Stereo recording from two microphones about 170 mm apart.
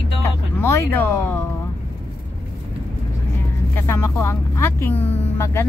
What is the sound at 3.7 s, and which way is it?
Vehicle, 15° left (ahead or behind).